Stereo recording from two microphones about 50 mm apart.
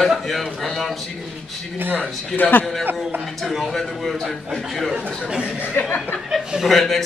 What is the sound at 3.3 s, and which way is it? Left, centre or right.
A man's voice, centre.